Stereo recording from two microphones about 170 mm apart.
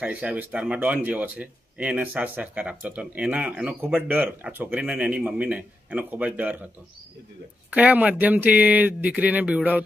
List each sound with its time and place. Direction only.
0.0 s speech: 10° right (ahead or behind)
7.7 s speech: 10° right (ahead or behind)